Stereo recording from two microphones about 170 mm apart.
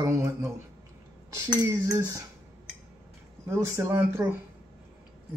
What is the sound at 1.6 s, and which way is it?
Cutlery, 20° right (ahead or behind).